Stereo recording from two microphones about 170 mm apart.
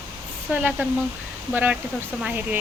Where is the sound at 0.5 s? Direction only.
10° right (ahead or behind).